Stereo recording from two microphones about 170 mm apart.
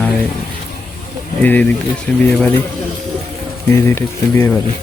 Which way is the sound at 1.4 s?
10° left (ahead or behind).